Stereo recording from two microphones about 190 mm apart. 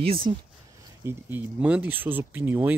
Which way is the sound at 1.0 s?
10° right (ahead or behind).